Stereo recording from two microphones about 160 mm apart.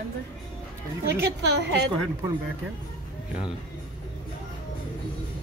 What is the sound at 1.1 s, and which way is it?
Speech, 90° right.